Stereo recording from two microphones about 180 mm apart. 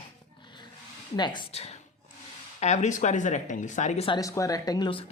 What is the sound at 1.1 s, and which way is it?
Speech, 25° left (ahead or behind).